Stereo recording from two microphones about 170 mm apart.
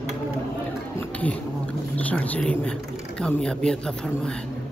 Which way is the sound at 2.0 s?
10° left (ahead or behind).